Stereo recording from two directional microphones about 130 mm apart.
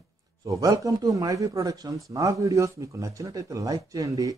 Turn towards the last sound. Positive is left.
turn(degrees=-25)  # may be behind; listen again after turning